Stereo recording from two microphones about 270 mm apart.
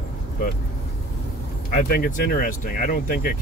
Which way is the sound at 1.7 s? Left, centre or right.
Left.